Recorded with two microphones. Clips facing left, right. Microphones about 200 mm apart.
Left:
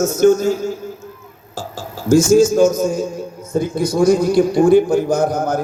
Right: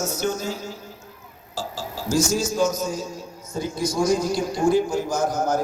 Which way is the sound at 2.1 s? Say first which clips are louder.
Left 12 dB; 50° left (ahead or behind).